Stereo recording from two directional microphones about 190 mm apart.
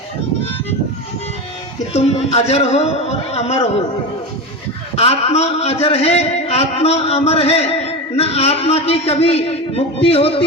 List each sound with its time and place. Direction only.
1.9 s a man's voice: 35° left (ahead or behind)
4.9 s a man's voice: 35° left (ahead or behind)